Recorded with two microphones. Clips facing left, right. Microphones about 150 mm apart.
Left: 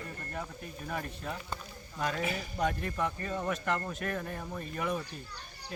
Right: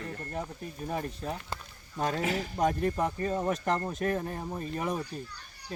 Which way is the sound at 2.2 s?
90° right.